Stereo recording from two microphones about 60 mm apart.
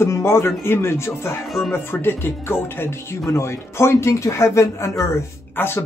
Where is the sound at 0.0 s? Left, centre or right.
Left.